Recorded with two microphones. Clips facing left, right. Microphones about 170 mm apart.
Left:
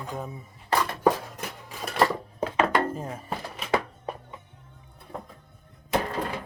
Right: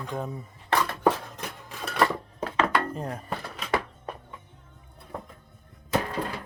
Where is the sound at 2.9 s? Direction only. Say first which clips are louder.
Right 1 dB; 5° left (ahead or behind).